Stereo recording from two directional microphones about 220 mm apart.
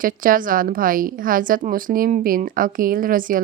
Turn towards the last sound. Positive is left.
turn(degrees=-40)  # may be behind; listen again after turning